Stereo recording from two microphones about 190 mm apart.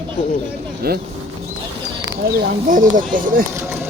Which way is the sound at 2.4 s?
50° right (ahead or behind).